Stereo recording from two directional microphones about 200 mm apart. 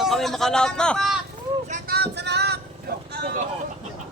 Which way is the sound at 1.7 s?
45° right (ahead or behind).